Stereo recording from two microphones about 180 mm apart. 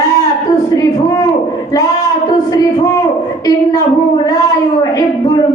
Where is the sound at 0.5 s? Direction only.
20° left (ahead or behind).